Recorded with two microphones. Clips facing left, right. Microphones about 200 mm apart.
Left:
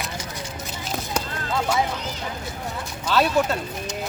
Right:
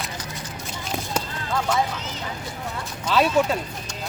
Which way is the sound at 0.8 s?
Centre (ahead or behind).